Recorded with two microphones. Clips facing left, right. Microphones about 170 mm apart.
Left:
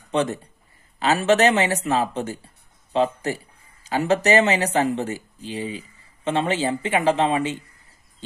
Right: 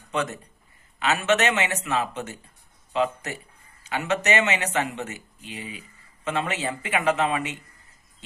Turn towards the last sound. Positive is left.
turn(degrees=30)  # may be behind; listen again after turning